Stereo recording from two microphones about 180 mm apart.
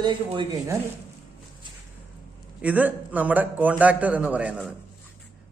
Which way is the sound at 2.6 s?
10° right (ahead or behind).